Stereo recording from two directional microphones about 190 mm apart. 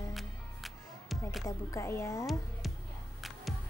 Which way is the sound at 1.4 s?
15° left (ahead or behind).